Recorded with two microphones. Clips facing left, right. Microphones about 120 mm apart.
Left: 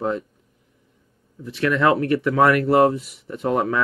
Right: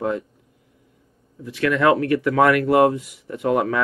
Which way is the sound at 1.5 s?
30° left (ahead or behind).